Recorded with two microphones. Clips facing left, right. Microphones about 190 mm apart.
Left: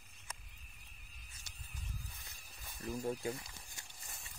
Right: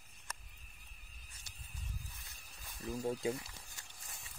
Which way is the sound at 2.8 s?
10° right (ahead or behind).